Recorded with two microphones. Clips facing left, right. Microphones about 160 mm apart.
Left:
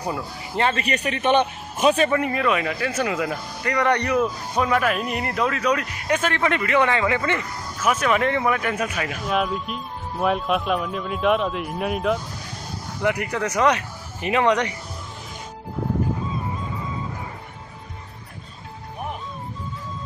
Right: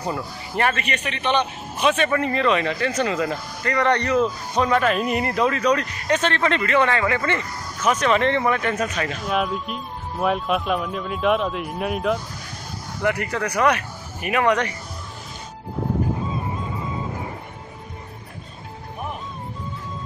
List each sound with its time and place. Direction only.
0.0 s speech: 15° left (ahead or behind)
0.7 s a man's voice: 40° left (ahead or behind)
2.0 s speech: 15° left (ahead or behind)
13.0 s speech: 15° left (ahead or behind)